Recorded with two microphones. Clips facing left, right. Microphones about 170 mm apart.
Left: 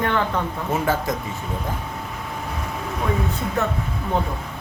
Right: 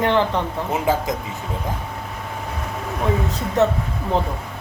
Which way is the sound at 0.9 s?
15° right (ahead or behind).